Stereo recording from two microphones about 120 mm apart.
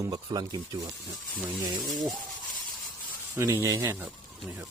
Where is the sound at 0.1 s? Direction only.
35° right (ahead or behind).